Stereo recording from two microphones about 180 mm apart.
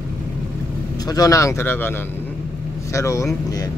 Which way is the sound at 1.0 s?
20° left (ahead or behind).